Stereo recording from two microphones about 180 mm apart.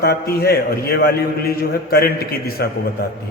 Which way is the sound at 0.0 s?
60° left (ahead or behind).